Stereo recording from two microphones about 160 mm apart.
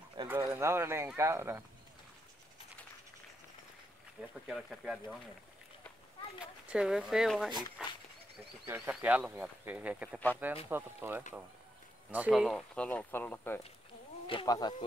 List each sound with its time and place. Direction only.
0.4 s speech: 20° right (ahead or behind)
4.5 s speech: centre (ahead or behind)
6.4 s speech: 5° right (ahead or behind); by 13.6 s 15° left (ahead or behind)
14.2 s insect: 35° left (ahead or behind)
14.5 s speech: 25° left (ahead or behind)